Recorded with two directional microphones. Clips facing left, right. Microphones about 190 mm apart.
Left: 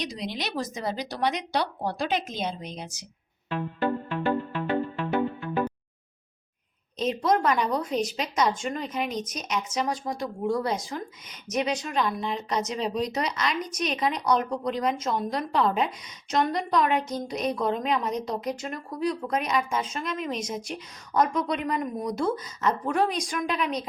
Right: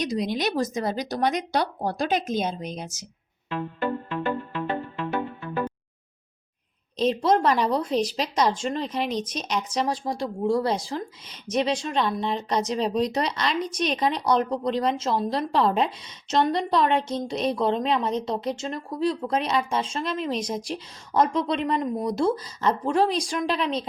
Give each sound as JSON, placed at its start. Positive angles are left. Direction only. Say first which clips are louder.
{"t": 0.0, "sound": "speech", "louder": "right 7 dB", "side_deg": -45}
{"t": 7.0, "sound": "a woman's voice", "louder": "right 3 dB", "side_deg": -30}